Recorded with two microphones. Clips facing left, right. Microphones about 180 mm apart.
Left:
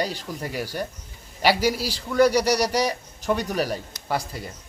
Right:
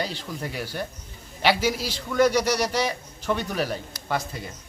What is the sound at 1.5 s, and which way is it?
A man's voice, 40° left (ahead or behind).